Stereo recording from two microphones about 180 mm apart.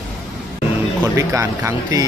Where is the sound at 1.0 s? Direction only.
20° right (ahead or behind).